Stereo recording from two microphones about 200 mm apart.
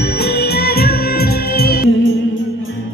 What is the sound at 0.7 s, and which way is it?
Music, 50° left (ahead or behind).